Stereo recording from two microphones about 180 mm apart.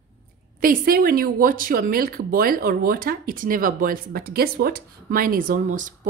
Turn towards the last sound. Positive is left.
turn(degrees=-45)  # may be behind; listen again after turning